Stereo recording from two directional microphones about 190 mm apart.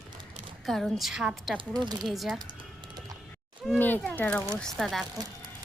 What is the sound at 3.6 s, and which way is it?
A woman's voice, 10° left (ahead or behind).